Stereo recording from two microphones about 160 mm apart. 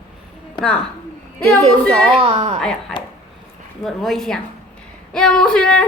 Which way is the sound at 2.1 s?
35° right (ahead or behind).